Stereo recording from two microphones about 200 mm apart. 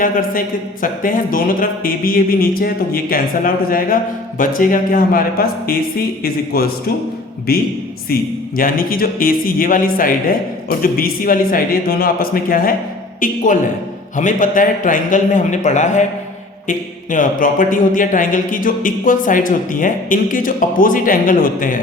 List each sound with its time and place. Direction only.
0.0 s a man's voice: 45° left (ahead or behind)